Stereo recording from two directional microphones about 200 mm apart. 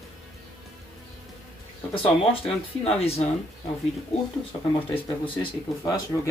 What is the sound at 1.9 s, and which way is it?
Speech, 25° left (ahead or behind).